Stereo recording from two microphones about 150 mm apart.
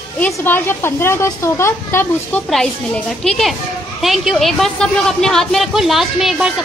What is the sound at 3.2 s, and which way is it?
A woman's voice, centre (ahead or behind).